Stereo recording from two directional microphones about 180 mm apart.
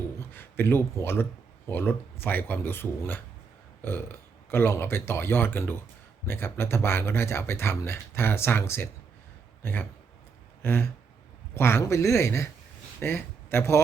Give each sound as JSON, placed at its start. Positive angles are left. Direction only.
{"t": 0.2, "sound": "speech", "side_deg": 10}
{"t": 4.5, "sound": "speech", "side_deg": 15}
{"t": 10.6, "sound": "a sound", "side_deg": 10}
{"t": 11.5, "sound": "speech", "side_deg": 15}